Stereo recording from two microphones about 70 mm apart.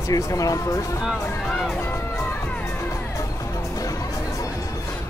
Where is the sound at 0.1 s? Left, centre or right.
Left.